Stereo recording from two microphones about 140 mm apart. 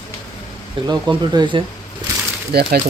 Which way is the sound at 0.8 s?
35° right (ahead or behind).